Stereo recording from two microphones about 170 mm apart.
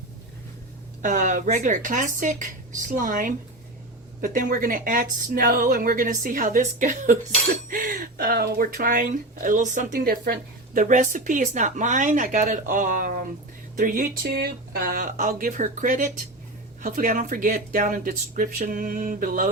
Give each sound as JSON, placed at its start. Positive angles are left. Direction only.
{"t": 1.0, "sound": "a woman's voice", "side_deg": -50}
{"t": 10.8, "sound": "a woman's voice", "side_deg": -50}
{"t": 14.3, "sound": "speech", "side_deg": -65}